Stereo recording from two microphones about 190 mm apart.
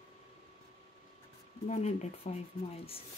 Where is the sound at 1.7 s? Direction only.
35° left (ahead or behind).